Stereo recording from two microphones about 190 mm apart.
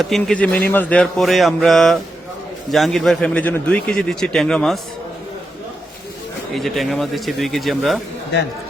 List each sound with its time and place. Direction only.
0.0 s a man's voice: centre (ahead or behind)
6.5 s a man's voice: centre (ahead or behind)